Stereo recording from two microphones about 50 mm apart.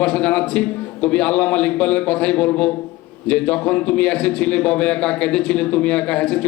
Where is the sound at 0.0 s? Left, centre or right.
Left.